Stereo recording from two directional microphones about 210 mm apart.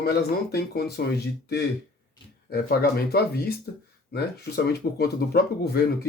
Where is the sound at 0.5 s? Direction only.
50° left (ahead or behind).